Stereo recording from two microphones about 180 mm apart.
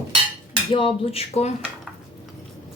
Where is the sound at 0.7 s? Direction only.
30° left (ahead or behind).